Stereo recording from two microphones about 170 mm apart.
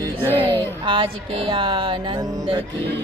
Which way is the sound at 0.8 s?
30° right (ahead or behind).